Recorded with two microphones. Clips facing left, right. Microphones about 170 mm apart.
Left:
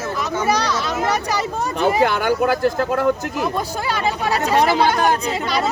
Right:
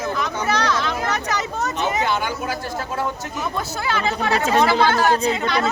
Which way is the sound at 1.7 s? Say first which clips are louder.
Left 6 dB; 55° left (ahead or behind).